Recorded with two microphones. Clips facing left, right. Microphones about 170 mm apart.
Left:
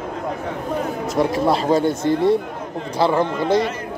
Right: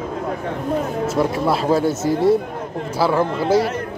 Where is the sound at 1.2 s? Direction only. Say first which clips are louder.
Left 2 dB; centre (ahead or behind).